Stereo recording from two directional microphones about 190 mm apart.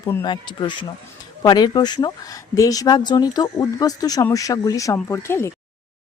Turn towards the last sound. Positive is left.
turn(degrees=15)  # may be behind; listen again after turning